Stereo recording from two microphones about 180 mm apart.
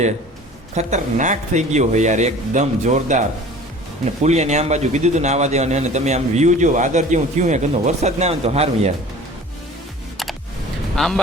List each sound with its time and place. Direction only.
0.8 s a man's voice: 40° right (ahead or behind)
10.9 s speech: centre (ahead or behind)